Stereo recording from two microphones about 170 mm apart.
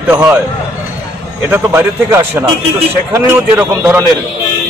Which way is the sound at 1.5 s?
15° right (ahead or behind).